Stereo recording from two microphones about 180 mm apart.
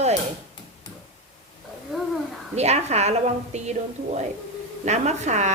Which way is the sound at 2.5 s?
35° right (ahead or behind).